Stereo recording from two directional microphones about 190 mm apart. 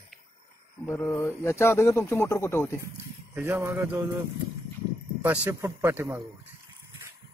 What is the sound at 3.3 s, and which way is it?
Speech, 10° right (ahead or behind).